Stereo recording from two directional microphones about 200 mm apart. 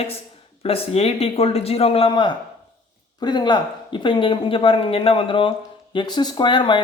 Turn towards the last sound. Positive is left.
turn(degrees=25)  # may be behind; listen again after turning